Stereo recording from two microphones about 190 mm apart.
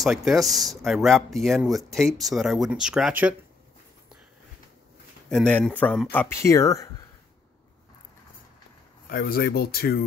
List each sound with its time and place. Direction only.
0.0 s speech: centre (ahead or behind)
5.3 s speech: 5° left (ahead or behind)
9.1 s speech: 50° left (ahead or behind)